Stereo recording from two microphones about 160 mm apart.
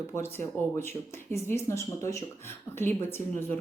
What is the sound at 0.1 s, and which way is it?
Speech, 15° left (ahead or behind).